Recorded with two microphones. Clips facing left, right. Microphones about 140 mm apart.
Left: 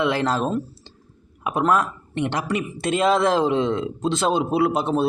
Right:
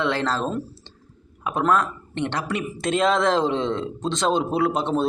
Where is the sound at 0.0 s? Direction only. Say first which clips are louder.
Left 2 dB; 10° left (ahead or behind).